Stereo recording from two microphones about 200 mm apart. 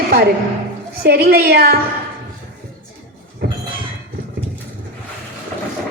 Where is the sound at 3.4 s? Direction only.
55° right (ahead or behind).